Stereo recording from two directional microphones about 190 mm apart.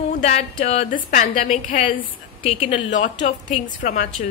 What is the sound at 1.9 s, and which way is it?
A woman's voice, 30° left (ahead or behind).